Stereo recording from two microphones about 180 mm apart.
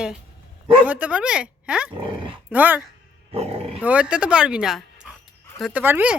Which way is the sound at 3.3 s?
35° right (ahead or behind).